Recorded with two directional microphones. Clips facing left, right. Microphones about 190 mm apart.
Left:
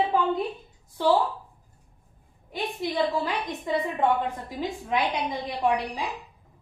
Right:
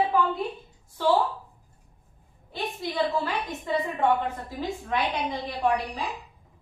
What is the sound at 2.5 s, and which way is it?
A woman's voice, 15° left (ahead or behind).